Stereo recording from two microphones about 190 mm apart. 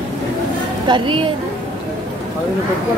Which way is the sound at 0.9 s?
25° right (ahead or behind).